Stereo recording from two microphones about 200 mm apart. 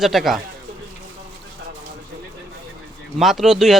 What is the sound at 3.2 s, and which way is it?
Speech, centre (ahead or behind).